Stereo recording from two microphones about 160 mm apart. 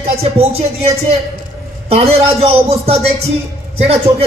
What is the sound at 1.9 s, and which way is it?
A man's voice, 40° right (ahead or behind).